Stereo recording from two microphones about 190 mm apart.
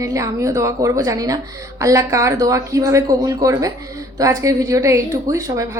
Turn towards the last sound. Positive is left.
turn(degrees=-15)  # may be behind; listen again after turning